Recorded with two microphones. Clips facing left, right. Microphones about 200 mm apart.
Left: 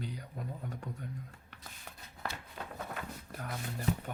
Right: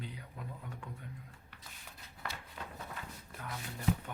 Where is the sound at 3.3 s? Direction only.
40° left (ahead or behind).